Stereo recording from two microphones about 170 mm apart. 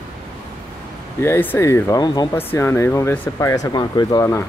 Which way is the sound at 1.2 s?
15° left (ahead or behind).